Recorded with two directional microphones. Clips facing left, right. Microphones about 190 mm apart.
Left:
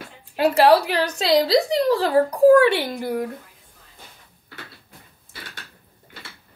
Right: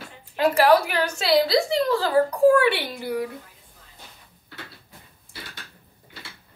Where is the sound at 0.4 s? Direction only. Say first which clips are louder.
Left 2 dB; 35° left (ahead or behind).